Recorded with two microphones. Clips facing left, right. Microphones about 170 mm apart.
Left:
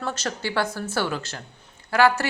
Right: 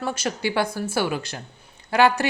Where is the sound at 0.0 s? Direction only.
10° right (ahead or behind).